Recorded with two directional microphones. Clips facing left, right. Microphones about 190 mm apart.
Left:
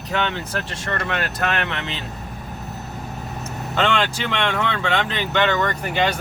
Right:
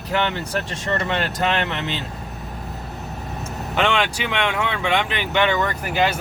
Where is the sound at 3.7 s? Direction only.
15° right (ahead or behind).